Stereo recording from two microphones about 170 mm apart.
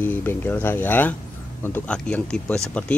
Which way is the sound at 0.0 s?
10° left (ahead or behind).